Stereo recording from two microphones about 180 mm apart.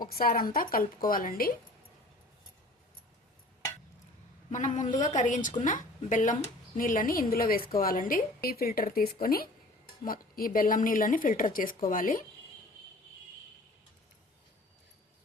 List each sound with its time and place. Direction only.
0.0 s a woman's voice: 55° left (ahead or behind)
4.5 s a woman's voice: 45° left (ahead or behind)